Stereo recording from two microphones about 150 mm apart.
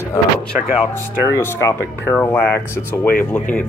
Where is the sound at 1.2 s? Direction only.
20° left (ahead or behind).